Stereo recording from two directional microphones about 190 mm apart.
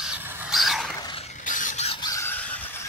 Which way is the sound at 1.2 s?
40° left (ahead or behind).